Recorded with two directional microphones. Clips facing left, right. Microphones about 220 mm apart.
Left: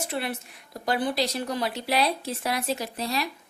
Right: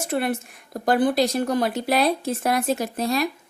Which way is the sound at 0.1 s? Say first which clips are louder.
Right 7 dB; 50° right (ahead or behind).